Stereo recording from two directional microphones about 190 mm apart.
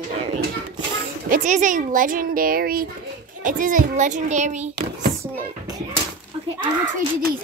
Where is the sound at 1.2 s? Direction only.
45° right (ahead or behind).